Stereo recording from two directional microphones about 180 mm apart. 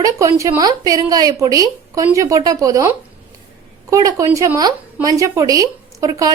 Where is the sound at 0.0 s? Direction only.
15° right (ahead or behind).